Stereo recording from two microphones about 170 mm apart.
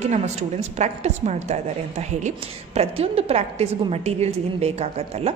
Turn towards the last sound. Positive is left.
turn(degrees=-35)  # may be behind; listen again after turning